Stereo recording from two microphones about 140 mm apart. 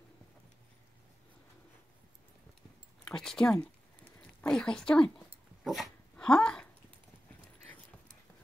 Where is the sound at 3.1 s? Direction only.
5° left (ahead or behind).